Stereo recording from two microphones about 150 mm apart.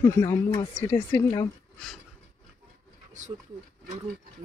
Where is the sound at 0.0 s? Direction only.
20° left (ahead or behind).